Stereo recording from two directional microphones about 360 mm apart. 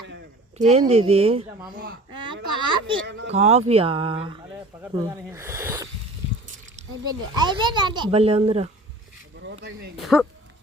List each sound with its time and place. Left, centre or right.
0.6 s speech: centre
3.1 s speech: right
3.3 s speech: centre
7.3 s speech: centre
10.0 s speech: centre